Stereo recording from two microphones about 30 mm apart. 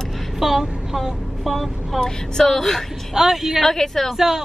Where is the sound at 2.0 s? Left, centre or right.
Centre.